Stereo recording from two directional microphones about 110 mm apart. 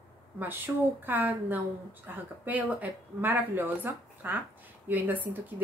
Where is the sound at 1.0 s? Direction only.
15° right (ahead or behind).